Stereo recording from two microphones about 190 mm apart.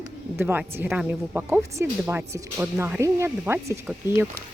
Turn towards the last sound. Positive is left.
turn(degrees=-10)  # may be behind; listen again after turning